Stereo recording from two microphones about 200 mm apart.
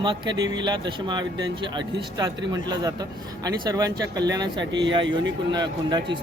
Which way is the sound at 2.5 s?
20° right (ahead or behind).